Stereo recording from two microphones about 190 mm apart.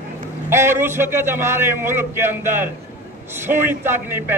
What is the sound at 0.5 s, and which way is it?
A man's voice, 15° right (ahead or behind).